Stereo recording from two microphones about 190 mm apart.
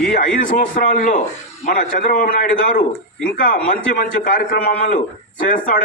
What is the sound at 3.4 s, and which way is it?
A man's voice, 45° left (ahead or behind).